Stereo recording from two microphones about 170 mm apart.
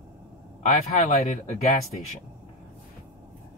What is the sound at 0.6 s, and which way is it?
Speech, 50° left (ahead or behind).